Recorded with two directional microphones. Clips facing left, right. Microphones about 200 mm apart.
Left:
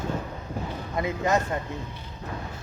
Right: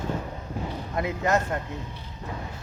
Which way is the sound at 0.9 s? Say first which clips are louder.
Even; centre (ahead or behind).